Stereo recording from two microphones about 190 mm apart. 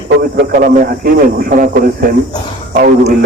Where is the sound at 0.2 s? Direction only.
50° right (ahead or behind).